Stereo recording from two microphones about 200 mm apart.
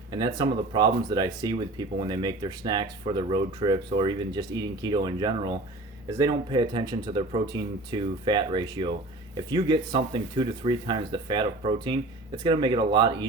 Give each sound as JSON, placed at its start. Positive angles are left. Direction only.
{"t": 0.2, "sound": "speech", "side_deg": -20}